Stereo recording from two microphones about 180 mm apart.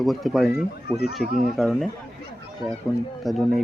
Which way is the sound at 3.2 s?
Centre (ahead or behind).